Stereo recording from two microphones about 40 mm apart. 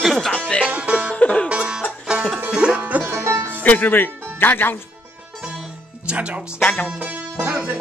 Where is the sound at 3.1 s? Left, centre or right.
Right.